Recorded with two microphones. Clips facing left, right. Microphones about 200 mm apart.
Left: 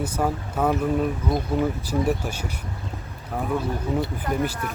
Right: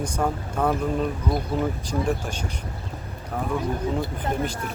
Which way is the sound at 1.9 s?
5° left (ahead or behind).